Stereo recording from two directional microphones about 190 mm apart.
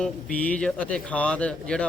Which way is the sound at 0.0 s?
5° left (ahead or behind).